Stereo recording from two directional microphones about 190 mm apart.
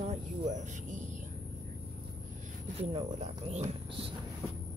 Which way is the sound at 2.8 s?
35° right (ahead or behind).